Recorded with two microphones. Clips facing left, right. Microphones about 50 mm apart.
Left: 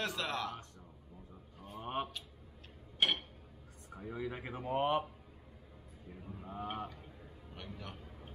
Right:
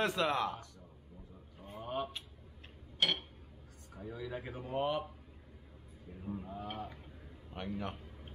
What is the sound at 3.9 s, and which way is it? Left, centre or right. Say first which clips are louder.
Speech: left 1 dB; left.